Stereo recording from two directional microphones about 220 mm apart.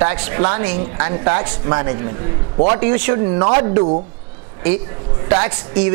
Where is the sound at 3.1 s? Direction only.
25° right (ahead or behind).